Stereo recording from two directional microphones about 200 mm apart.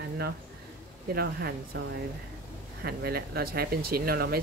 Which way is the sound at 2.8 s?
50° right (ahead or behind).